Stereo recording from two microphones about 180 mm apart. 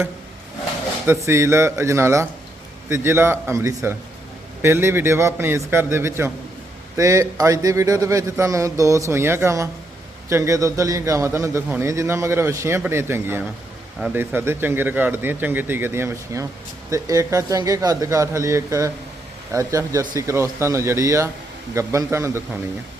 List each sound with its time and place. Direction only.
1.0 s a man's voice: 15° right (ahead or behind)